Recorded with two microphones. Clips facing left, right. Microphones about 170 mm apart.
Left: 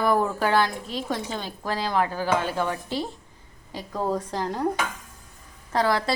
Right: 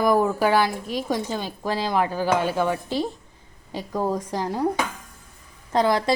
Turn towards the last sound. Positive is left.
turn(degrees=-20)  # may be behind; listen again after turning